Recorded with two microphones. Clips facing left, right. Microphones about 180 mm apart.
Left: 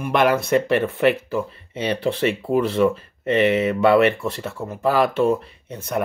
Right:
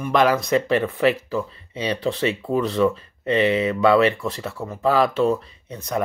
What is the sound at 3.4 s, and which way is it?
Speech, 60° left (ahead or behind).